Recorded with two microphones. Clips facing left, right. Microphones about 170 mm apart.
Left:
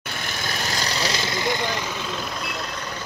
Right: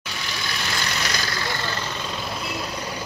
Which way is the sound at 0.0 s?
50° left (ahead or behind).